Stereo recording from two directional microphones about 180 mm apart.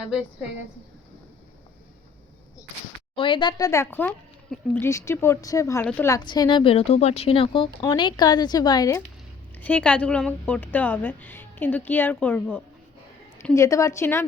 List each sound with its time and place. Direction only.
3.2 s a woman's voice: 25° left (ahead or behind)
9.6 s a woman's voice: 10° left (ahead or behind)